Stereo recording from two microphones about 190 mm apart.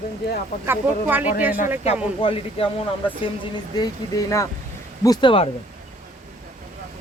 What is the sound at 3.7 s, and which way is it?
Speech, 20° left (ahead or behind).